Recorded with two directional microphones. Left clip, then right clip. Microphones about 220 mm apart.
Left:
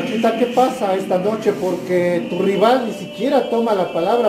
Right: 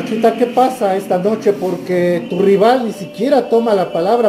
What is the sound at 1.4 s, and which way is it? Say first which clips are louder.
Speech: right 3 dB; 40° right (ahead or behind).